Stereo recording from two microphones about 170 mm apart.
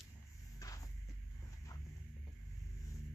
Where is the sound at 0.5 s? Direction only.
20° left (ahead or behind).